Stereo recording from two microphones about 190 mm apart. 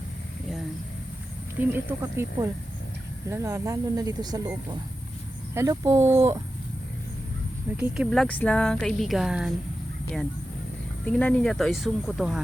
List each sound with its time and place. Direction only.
1.5 s speech: 10° right (ahead or behind)
7.8 s speech: centre (ahead or behind)
11.0 s speech: 5° left (ahead or behind)